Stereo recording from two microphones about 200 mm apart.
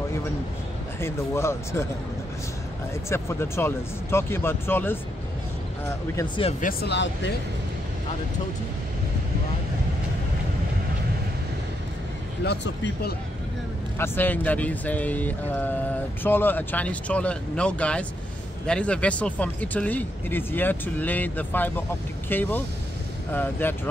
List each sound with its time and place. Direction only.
1.0 s speech: 15° left (ahead or behind)
2.9 s speech: 15° left (ahead or behind)
6.1 s speech: 25° left (ahead or behind)
6.6 s speech: 55° left (ahead or behind)
12.4 s speech: 60° left (ahead or behind)
13.9 s speech: 10° left (ahead or behind)